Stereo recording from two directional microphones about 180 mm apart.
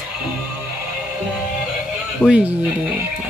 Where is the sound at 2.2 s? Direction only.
5° right (ahead or behind).